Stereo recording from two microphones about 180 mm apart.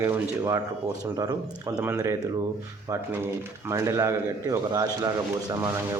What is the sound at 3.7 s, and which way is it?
A man's voice, 15° right (ahead or behind).